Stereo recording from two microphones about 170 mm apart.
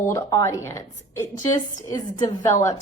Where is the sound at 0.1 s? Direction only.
20° left (ahead or behind).